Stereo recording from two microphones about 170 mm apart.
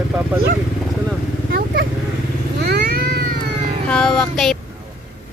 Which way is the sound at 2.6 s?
65° right (ahead or behind).